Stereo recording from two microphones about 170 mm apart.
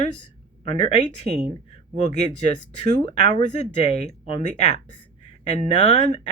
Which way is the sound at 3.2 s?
40° left (ahead or behind).